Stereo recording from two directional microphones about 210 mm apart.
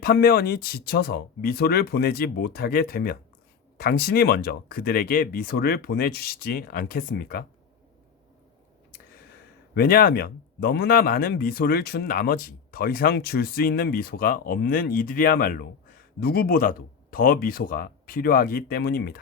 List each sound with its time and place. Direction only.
0.0 s speech: 45° left (ahead or behind)
9.7 s speech: 45° left (ahead or behind)